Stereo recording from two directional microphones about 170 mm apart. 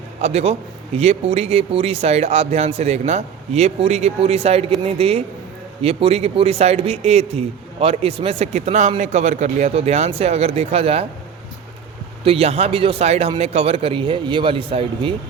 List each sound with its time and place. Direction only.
0.2 s speech: 40° right (ahead or behind)
12.2 s speech: 35° right (ahead or behind)